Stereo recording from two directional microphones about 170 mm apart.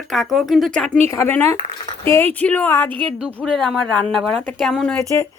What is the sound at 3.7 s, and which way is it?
A woman's voice, 5° left (ahead or behind).